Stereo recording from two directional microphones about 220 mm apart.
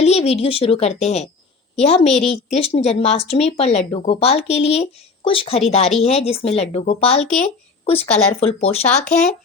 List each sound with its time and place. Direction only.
0.0 s a woman's voice: 30° left (ahead or behind)